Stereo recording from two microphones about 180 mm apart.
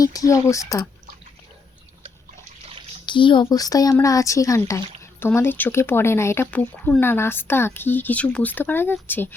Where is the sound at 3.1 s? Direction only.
25° left (ahead or behind).